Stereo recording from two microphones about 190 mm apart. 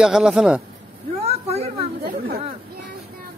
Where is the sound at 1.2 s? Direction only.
35° right (ahead or behind).